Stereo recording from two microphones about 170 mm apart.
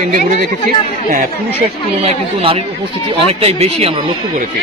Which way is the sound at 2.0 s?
35° right (ahead or behind).